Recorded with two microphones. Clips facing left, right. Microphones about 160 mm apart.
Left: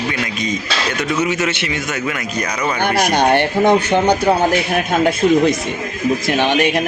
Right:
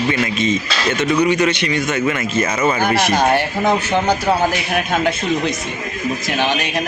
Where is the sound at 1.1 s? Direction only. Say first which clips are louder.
Right 4 dB; 5° left (ahead or behind).